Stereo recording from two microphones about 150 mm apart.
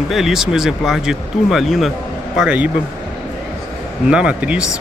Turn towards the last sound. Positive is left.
turn(degrees=-5)  # may be behind; listen again after turning